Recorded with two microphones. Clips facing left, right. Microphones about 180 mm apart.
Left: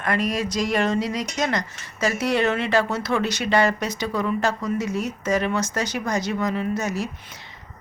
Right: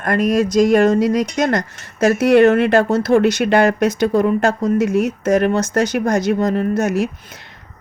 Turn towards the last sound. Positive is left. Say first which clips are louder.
# right 3 dB
turn(degrees=-55)  # may be behind; listen again after turning